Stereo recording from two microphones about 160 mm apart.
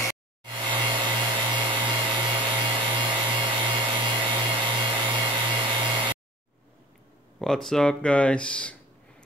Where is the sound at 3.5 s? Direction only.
30° right (ahead or behind).